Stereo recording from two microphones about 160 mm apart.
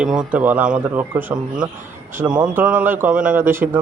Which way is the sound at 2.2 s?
10° right (ahead or behind).